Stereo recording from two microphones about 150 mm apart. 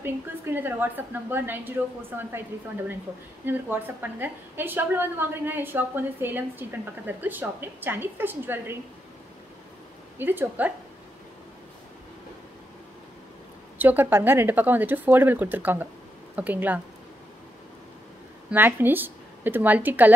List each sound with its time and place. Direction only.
0.0 s a woman's voice: 15° right (ahead or behind)
3.4 s a woman's voice: 15° right (ahead or behind)
10.1 s a woman's voice: 15° right (ahead or behind)
13.7 s a woman's voice: 15° right (ahead or behind)
18.5 s a woman's voice: 15° right (ahead or behind)